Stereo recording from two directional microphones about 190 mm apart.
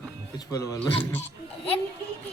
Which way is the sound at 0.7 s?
10° left (ahead or behind).